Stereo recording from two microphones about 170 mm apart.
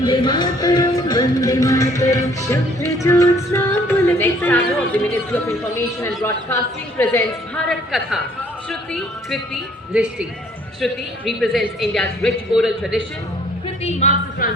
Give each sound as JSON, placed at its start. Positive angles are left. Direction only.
{"t": 0.0, "sound": "speech", "side_deg": 25}
{"t": 2.5, "sound": "music", "side_deg": 15}
{"t": 7.7, "sound": "a woman's voice", "side_deg": 0}
{"t": 11.3, "sound": "a woman's voice", "side_deg": 0}
{"t": 13.8, "sound": "speech", "side_deg": 45}